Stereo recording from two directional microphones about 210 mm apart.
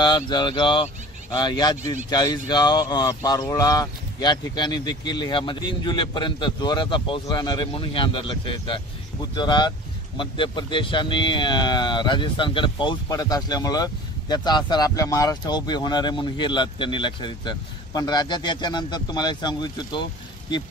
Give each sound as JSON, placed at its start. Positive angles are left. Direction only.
{"t": 0.0, "sound": "speech", "side_deg": 20}